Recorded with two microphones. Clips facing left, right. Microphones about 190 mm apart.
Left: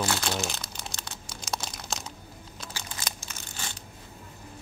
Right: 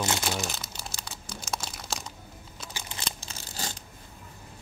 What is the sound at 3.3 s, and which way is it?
Scissors, 35° right (ahead or behind).